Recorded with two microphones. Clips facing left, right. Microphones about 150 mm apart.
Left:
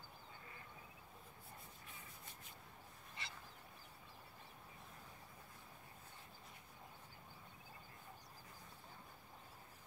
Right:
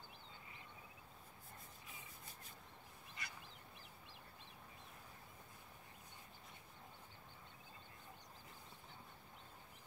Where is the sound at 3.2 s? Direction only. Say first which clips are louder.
Even; 25° left (ahead or behind).